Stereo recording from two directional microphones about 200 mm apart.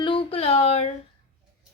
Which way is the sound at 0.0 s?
25° left (ahead or behind).